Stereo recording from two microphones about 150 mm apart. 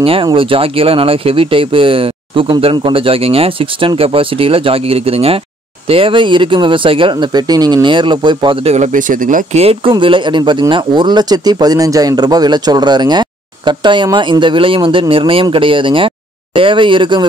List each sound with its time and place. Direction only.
0.0 s speech: 35° right (ahead or behind)
8.7 s speech: 55° right (ahead or behind)
9.6 s speech: 35° right (ahead or behind)